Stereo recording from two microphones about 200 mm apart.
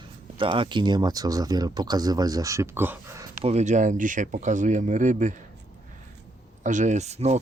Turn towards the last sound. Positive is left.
turn(degrees=-35)  # may be behind; listen again after turning